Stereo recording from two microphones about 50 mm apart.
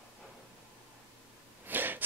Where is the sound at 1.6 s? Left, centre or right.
Right.